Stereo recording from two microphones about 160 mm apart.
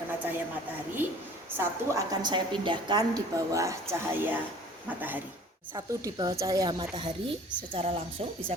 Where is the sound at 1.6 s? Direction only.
20° right (ahead or behind).